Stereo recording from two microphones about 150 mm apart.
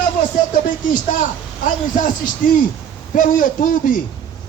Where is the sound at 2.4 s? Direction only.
65° left (ahead or behind).